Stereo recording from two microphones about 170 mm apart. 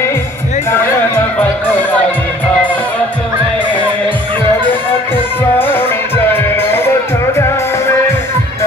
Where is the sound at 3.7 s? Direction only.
10° left (ahead or behind).